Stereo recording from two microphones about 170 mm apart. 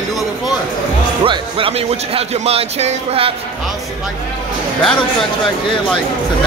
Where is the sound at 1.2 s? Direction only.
30° right (ahead or behind).